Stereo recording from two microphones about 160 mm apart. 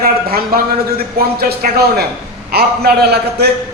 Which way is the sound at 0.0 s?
65° right (ahead or behind).